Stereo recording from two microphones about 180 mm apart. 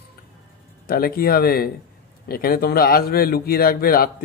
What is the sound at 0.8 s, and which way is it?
Speech, 55° left (ahead or behind).